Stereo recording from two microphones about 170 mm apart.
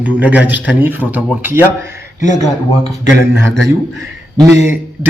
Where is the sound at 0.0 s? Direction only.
10° right (ahead or behind).